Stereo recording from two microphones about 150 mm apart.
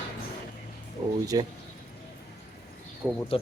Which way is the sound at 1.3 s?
25° right (ahead or behind).